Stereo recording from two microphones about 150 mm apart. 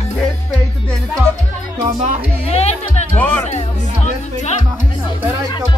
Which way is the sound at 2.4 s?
45° left (ahead or behind).